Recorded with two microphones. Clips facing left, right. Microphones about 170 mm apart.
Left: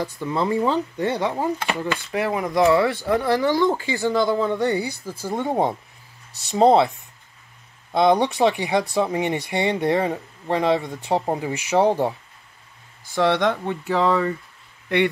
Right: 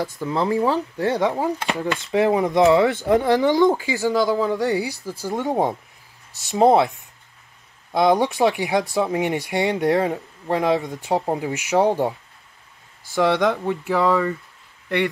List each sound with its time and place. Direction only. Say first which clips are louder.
0.2 s speech: right 1 dB; 10° right (ahead or behind)
5.3 s speech: even; 10° left (ahead or behind)
6.5 s speech: even; 10° right (ahead or behind)
7.9 s speech: even; 10° right (ahead or behind)
13.1 s speech: right 1 dB; 5° right (ahead or behind)